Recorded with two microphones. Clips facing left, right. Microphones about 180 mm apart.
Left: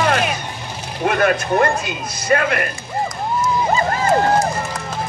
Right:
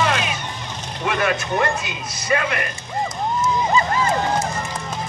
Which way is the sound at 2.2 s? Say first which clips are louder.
Left 4 dB; 50° left (ahead or behind).